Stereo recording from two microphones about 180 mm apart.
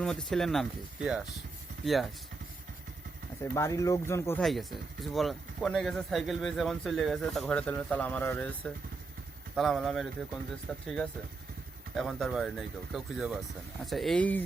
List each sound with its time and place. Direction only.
0.0 s speech: 5° left (ahead or behind)
3.4 s speech: 15° left (ahead or behind)
4.4 s speech: centre (ahead or behind)